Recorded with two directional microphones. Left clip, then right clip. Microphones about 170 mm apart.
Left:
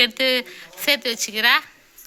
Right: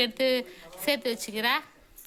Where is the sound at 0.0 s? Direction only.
5° right (ahead or behind).